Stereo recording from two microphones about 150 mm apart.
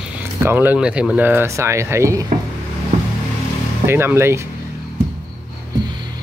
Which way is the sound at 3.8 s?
15° right (ahead or behind).